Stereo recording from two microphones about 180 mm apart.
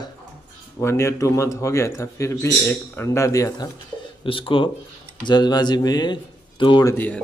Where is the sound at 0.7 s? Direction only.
15° left (ahead or behind).